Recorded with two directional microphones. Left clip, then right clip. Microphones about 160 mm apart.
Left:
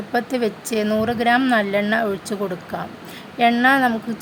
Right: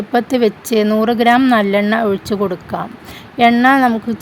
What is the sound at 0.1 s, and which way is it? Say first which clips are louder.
Speech: right 7 dB; 40° right (ahead or behind).